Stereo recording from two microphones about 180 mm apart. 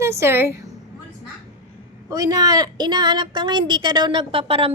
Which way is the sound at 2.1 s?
20° right (ahead or behind).